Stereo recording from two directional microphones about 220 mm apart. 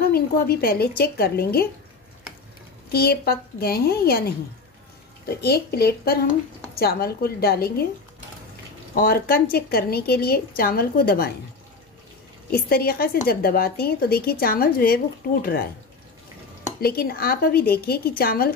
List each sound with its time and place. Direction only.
0.1 s a woman's voice: 45° left (ahead or behind)
2.9 s a woman's voice: 45° left (ahead or behind)
5.3 s a woman's voice: 45° left (ahead or behind)
8.9 s a woman's voice: 45° left (ahead or behind)
12.4 s a woman's voice: 45° left (ahead or behind)
16.8 s a woman's voice: 45° left (ahead or behind)